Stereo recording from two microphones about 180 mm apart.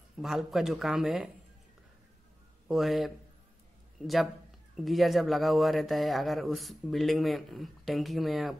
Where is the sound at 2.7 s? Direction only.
Centre (ahead or behind).